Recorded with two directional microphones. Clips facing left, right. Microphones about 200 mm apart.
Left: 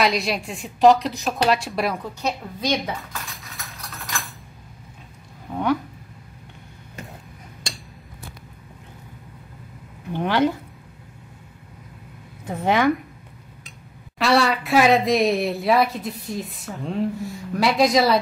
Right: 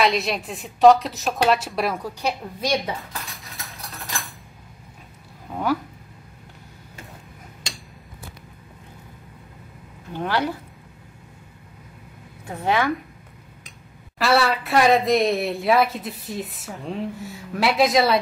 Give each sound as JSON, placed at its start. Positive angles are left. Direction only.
{"t": 0.0, "sound": "a woman's voice", "side_deg": 0}
{"t": 3.3, "sound": "cutlery", "side_deg": 0}
{"t": 5.5, "sound": "a woman's voice", "side_deg": -5}
{"t": 10.1, "sound": "a woman's voice", "side_deg": 20}
{"t": 12.4, "sound": "a woman's voice", "side_deg": 15}
{"t": 14.1, "sound": "a woman's voice", "side_deg": 0}